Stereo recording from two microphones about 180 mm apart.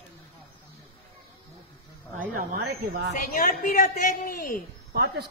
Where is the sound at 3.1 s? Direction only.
50° left (ahead or behind).